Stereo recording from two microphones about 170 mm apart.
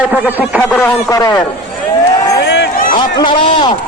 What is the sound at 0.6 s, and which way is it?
Speech, 5° left (ahead or behind).